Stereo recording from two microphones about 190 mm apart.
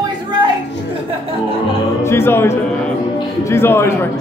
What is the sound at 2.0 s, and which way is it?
A man's voice, 15° left (ahead or behind).